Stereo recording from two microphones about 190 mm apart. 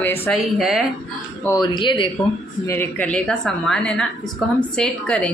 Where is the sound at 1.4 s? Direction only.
15° left (ahead or behind).